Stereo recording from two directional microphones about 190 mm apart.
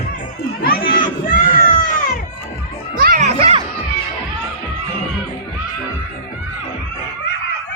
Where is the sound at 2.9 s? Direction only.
50° right (ahead or behind).